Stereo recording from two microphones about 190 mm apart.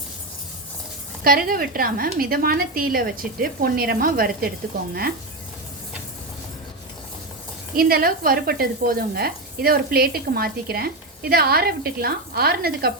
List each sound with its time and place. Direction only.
1.2 s speech: 50° right (ahead or behind)
7.8 s speech: 50° right (ahead or behind)